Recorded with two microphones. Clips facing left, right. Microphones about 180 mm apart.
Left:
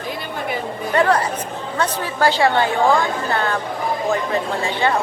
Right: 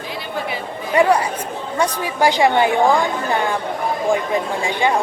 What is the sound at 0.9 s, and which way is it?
A woman's voice, 10° right (ahead or behind).